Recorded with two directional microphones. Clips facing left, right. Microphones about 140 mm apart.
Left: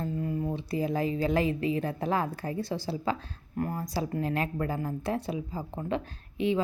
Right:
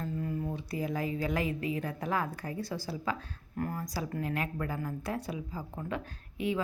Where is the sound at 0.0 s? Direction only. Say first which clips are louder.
Left 4 dB; 20° left (ahead or behind).